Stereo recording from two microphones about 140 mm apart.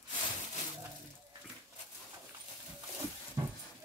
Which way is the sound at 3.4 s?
20° right (ahead or behind).